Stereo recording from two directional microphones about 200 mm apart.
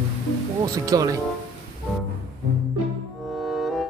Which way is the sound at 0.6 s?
20° right (ahead or behind).